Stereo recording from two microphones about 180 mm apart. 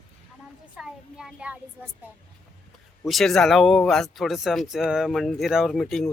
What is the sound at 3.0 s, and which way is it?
Speech, centre (ahead or behind).